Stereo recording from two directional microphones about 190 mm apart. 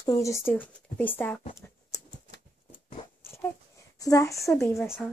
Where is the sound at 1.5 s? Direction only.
15° left (ahead or behind).